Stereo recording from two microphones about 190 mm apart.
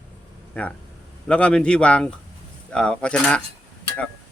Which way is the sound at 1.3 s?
5° left (ahead or behind).